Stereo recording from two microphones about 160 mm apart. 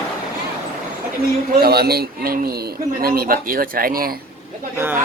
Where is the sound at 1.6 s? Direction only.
80° right.